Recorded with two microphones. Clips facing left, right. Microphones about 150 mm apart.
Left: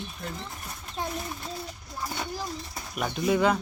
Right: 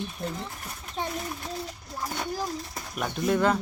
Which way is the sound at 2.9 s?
5° left (ahead or behind).